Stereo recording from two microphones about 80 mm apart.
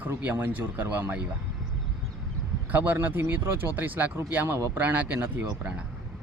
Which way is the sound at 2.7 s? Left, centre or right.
Right.